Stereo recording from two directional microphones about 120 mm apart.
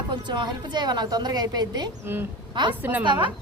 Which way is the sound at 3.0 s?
45° right (ahead or behind).